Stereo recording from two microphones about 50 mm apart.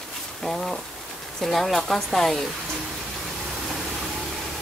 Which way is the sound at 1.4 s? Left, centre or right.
Centre.